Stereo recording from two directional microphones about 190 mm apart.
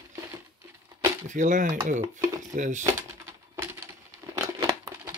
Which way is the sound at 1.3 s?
40° right (ahead or behind).